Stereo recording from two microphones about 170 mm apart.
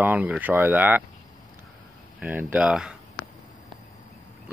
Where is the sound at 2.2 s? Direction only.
10° right (ahead or behind).